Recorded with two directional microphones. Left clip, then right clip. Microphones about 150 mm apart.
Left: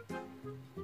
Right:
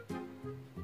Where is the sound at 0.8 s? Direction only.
Centre (ahead or behind).